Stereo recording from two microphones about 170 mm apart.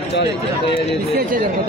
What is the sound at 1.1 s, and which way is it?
Speech, 60° right (ahead or behind).